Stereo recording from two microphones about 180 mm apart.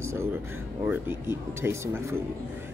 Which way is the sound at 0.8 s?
10° right (ahead or behind).